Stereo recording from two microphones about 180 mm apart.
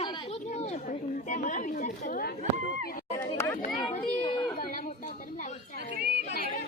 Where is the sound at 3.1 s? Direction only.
15° left (ahead or behind).